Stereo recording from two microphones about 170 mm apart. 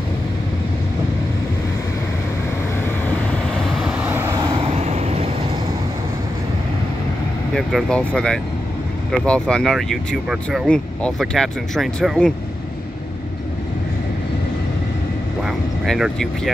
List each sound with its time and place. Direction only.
3.5 s vehicle: centre (ahead or behind); by 4.6 s 20° right (ahead or behind)
4.7 s vehicle: 40° right (ahead or behind)
7.5 s speech: 5° left (ahead or behind)
15.4 s speech: centre (ahead or behind)